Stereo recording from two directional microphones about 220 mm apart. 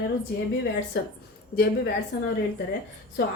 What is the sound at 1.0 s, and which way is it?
Speech, 50° left (ahead or behind).